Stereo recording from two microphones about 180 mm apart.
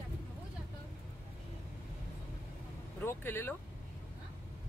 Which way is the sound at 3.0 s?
10° left (ahead or behind).